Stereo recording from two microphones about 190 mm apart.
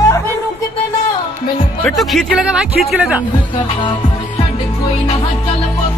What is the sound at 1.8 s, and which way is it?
Speech, centre (ahead or behind).